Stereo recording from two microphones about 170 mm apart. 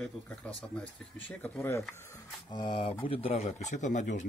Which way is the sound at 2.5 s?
25° left (ahead or behind).